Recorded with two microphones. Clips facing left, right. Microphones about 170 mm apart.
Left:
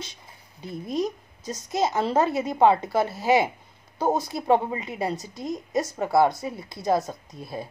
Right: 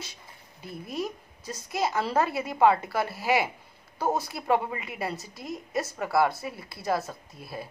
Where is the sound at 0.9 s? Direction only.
20° left (ahead or behind).